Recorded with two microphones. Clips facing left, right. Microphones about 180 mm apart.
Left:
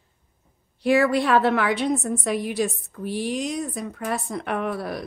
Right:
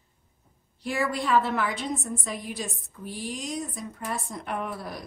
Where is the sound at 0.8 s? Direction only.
70° left (ahead or behind).